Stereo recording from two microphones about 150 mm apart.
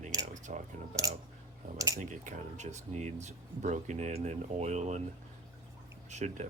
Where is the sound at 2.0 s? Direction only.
55° right (ahead or behind).